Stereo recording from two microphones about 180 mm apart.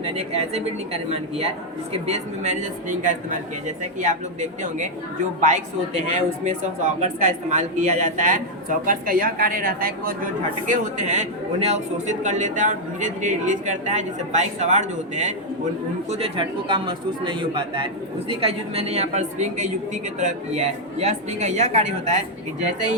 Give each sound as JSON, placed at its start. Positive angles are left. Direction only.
{"t": 0.0, "sound": "a man's voice", "side_deg": -35}
{"t": 10.7, "sound": "a man's voice", "side_deg": -40}